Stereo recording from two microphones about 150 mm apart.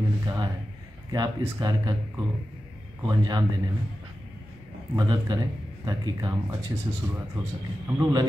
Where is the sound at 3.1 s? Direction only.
25° right (ahead or behind).